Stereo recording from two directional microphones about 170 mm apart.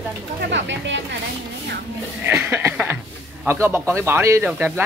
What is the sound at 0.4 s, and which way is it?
Speech, 90° right.